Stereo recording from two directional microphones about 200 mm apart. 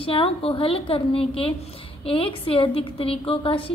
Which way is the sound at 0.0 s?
30° left (ahead or behind).